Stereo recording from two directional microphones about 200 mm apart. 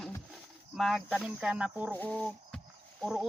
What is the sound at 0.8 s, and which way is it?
Speech, centre (ahead or behind).